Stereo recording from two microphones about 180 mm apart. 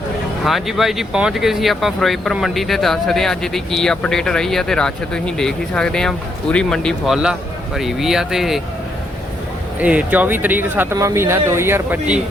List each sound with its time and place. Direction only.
0.4 s speech: centre (ahead or behind)
9.8 s speech: 5° right (ahead or behind)